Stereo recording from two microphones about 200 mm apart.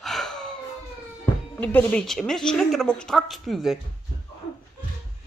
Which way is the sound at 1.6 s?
5° left (ahead or behind).